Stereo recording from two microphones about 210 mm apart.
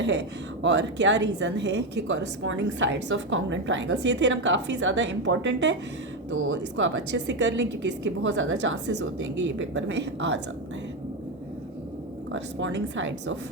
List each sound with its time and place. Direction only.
0.0 s a woman's voice: 55° right (ahead or behind)
12.3 s a woman's voice: 60° right (ahead or behind)